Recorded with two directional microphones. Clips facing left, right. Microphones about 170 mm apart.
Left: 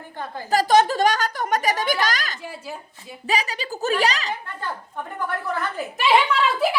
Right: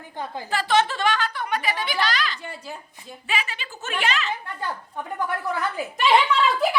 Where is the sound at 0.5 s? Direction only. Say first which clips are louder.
Left 5 dB; 40° left (ahead or behind).